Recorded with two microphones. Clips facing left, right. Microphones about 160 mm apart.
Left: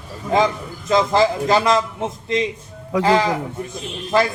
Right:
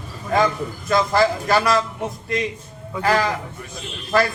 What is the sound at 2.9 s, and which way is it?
Speech, 90° left.